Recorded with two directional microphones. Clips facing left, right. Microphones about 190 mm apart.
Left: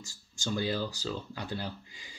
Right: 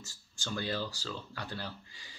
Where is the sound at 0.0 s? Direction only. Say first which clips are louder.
Left 6 dB; 15° left (ahead or behind).